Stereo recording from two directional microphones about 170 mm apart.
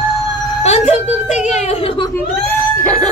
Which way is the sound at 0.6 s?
40° left (ahead or behind).